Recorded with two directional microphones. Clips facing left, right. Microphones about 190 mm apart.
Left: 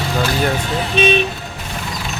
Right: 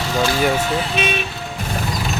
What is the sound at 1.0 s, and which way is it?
Speech, 30° left (ahead or behind).